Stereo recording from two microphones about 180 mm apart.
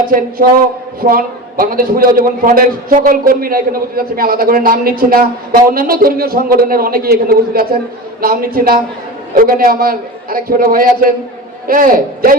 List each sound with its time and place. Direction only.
1.0 s a man's voice: 50° right (ahead or behind)